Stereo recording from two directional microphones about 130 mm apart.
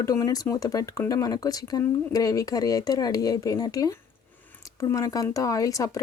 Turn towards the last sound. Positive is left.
turn(degrees=25)  # may be behind; listen again after turning